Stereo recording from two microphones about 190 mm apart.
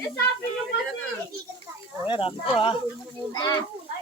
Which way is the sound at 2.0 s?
25° left (ahead or behind).